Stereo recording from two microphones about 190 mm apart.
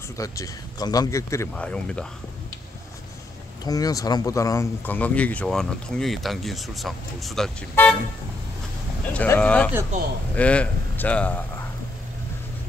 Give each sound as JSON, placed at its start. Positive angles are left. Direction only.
{"t": 0.2, "sound": "speech", "side_deg": 20}
{"t": 1.5, "sound": "speech", "side_deg": 5}
{"t": 3.6, "sound": "speech", "side_deg": 20}
{"t": 9.1, "sound": "speech", "side_deg": 5}